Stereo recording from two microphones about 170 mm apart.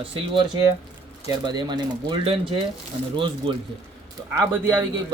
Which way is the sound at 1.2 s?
25° right (ahead or behind).